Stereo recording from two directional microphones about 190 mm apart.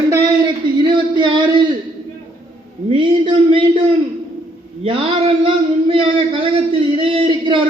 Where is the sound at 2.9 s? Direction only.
25° right (ahead or behind).